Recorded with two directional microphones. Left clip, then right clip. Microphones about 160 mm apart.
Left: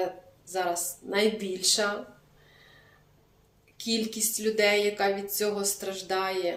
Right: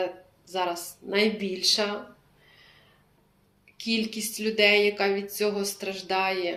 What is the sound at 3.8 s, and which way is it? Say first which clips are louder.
Speech: right 1 dB; 20° left (ahead or behind).